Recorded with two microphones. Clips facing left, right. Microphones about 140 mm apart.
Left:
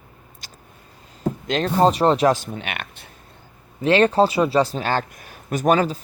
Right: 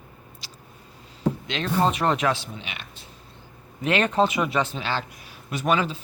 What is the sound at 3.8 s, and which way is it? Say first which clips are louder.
Speech: left 5 dB; 30° left (ahead or behind).